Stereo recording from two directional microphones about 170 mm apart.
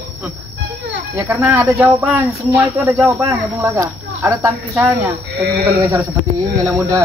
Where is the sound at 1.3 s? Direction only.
10° right (ahead or behind).